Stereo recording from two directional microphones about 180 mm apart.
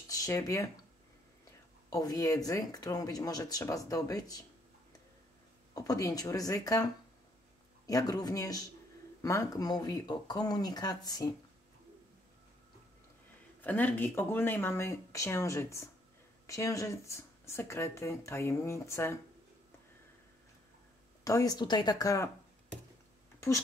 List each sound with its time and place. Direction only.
0.1 s speech: 20° left (ahead or behind)
1.9 s speech: 20° left (ahead or behind)
5.8 s speech: 20° left (ahead or behind)
13.6 s speech: 10° left (ahead or behind)
21.2 s speech: 20° left (ahead or behind)